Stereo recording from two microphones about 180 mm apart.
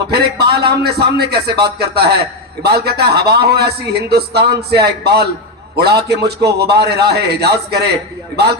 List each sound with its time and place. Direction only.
0.1 s a man's voice: 65° right (ahead or behind)